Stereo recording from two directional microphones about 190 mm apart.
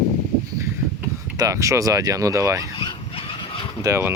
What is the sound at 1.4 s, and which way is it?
Speech, 15° right (ahead or behind).